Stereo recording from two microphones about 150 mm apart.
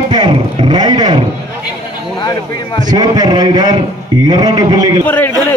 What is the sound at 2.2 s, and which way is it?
Speech, 30° left (ahead or behind).